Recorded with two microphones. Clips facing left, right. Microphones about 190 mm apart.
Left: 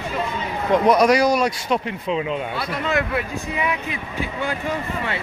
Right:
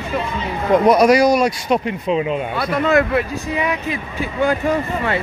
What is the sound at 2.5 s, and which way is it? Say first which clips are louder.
Speech: right 11 dB; 50° right (ahead or behind).